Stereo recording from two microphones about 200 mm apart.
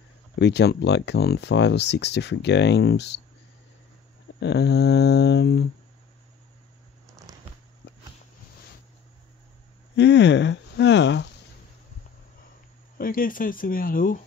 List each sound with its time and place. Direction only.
0.4 s speech: 60° left (ahead or behind)
4.4 s speech: 60° left (ahead or behind)
9.9 s speech: 60° left (ahead or behind)
12.9 s speech: 45° left (ahead or behind)